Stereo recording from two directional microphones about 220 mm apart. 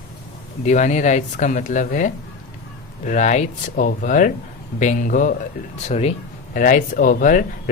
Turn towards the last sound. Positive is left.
turn(degrees=35)  # may be behind; listen again after turning